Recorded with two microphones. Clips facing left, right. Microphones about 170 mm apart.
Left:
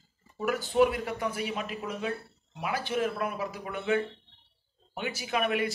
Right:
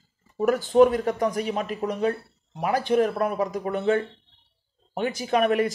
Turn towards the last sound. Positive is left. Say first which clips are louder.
# right 7 dB
turn(degrees=-40)  # may be behind; listen again after turning